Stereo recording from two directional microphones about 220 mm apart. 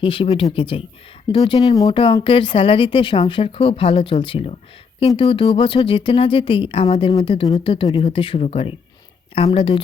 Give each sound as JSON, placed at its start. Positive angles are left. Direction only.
{"t": 0.0, "sound": "speech", "side_deg": 25}